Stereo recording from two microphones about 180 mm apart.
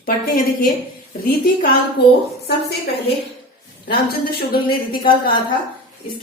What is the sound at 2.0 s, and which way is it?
Speech, 65° left (ahead or behind).